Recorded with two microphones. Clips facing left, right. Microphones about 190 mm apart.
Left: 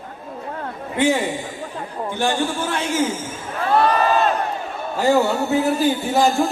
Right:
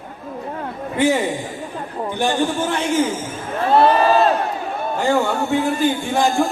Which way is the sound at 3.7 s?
30° right (ahead or behind).